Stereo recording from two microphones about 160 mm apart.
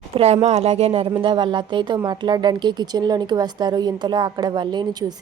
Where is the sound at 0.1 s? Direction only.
40° right (ahead or behind).